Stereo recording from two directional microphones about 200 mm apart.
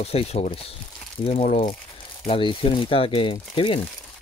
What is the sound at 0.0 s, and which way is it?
Speech, 30° left (ahead or behind).